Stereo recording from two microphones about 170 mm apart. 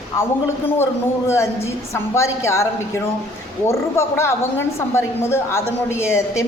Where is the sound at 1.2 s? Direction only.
15° left (ahead or behind).